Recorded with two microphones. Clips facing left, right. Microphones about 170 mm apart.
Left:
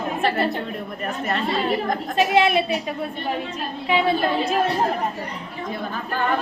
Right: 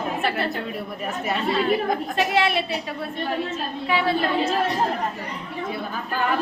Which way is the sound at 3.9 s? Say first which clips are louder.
Left 2 dB; 20° left (ahead or behind).